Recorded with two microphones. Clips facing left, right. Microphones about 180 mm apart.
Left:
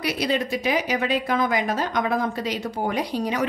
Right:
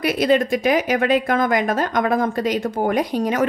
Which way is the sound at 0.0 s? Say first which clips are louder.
Right 7 dB; 50° right (ahead or behind).